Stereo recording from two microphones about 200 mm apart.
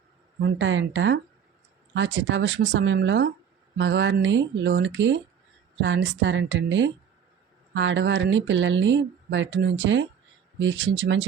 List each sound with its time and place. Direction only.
0.4 s speech: 70° right (ahead or behind)